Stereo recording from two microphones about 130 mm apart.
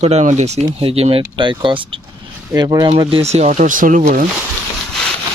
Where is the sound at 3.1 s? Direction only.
50° right (ahead or behind); by 4.0 s 90° right.